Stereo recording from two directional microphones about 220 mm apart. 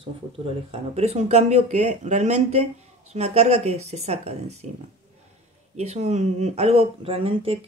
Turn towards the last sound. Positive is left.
turn(degrees=-25)  # may be behind; listen again after turning